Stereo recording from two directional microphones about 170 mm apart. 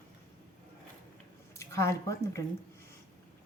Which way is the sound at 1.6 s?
15° left (ahead or behind).